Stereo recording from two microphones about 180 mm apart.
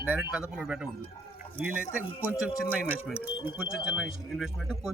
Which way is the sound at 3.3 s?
30° left (ahead or behind).